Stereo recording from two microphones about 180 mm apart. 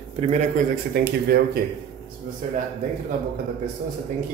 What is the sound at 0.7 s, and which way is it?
Speech, 60° right (ahead or behind).